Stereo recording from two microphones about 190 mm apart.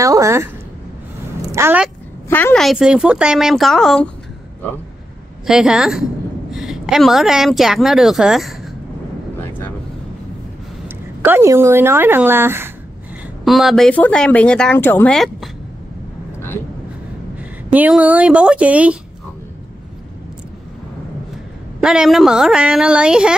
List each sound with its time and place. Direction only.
0.0 s a sound: 15° right (ahead or behind)
1.5 s a sound: 10° right (ahead or behind)
2.2 s speech: 10° left (ahead or behind)
5.5 s a woman's voice: 5° right (ahead or behind)
9.4 s vehicle: 10° left (ahead or behind)
11.2 s a woman's voice: 10° right (ahead or behind)
13.4 s speech: centre (ahead or behind)
17.7 s a woman's voice: 5° right (ahead or behind)
21.8 s speech: centre (ahead or behind)